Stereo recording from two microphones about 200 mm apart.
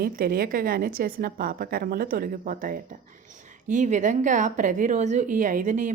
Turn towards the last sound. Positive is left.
turn(degrees=-40)  # may be behind; listen again after turning